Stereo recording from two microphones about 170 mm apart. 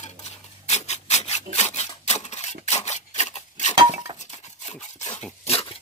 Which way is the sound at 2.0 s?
40° left (ahead or behind).